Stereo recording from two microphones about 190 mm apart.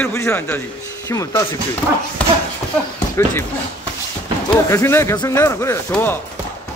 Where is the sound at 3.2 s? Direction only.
15° left (ahead or behind).